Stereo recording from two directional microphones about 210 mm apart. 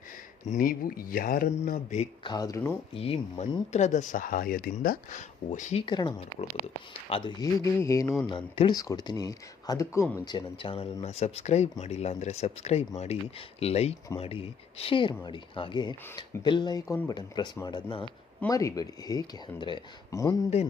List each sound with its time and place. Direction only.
0.4 s speech: 40° left (ahead or behind)
2.2 s speech: 20° left (ahead or behind)
2.9 s speech: 30° left (ahead or behind)
5.8 s speech: 20° left (ahead or behind)